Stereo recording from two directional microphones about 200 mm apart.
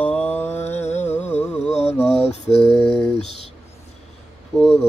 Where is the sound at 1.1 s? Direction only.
10° left (ahead or behind).